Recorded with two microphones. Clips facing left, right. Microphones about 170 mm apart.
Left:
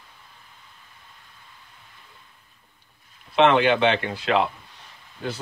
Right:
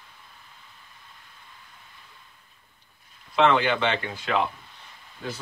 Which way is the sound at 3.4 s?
65° left (ahead or behind).